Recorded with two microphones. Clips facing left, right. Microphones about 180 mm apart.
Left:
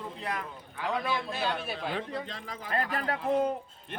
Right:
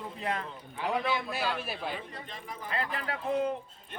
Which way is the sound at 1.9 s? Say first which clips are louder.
Left 5 dB; 85° left.